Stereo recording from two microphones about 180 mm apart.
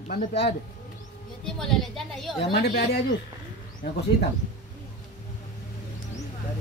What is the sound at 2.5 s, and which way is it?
Speech, 65° left (ahead or behind).